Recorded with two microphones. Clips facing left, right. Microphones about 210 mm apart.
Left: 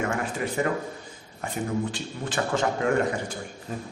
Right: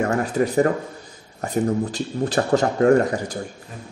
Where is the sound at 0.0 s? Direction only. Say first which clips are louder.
Right 7 dB; 40° right (ahead or behind).